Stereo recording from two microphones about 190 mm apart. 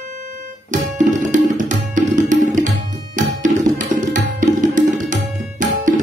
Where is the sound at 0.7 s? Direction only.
40° right (ahead or behind).